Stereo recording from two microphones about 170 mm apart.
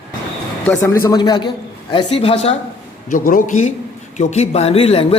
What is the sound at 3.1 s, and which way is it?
A man's voice, 50° left (ahead or behind).